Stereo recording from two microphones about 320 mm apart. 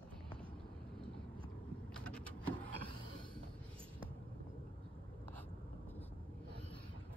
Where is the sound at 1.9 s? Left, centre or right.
Centre.